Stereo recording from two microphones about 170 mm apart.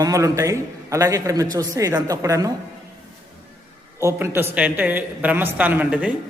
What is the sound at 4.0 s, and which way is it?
A woman's voice, 15° right (ahead or behind).